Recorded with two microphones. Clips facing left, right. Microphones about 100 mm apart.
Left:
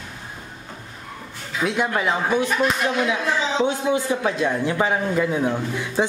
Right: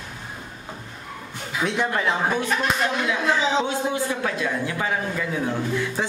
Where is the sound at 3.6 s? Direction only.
20° left (ahead or behind).